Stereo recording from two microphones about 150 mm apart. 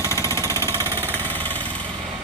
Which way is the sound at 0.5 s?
15° left (ahead or behind).